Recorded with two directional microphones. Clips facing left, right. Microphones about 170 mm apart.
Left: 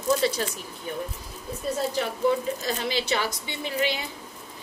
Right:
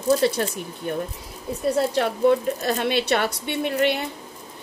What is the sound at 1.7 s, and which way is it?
A woman's voice, 65° right (ahead or behind).